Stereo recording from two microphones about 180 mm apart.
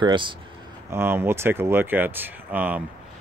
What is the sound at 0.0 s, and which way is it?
Speech, 25° right (ahead or behind).